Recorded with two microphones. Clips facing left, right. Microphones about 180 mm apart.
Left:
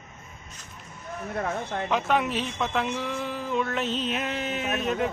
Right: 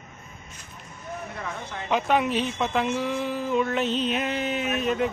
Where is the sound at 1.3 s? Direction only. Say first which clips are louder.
Left 5 dB; 50° left (ahead or behind).